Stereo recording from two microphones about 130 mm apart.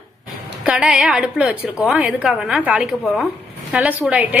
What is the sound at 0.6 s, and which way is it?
A woman's voice, 10° right (ahead or behind).